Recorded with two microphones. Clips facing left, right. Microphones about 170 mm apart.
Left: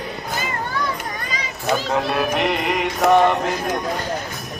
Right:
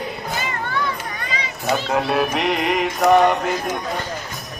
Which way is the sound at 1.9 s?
5° right (ahead or behind).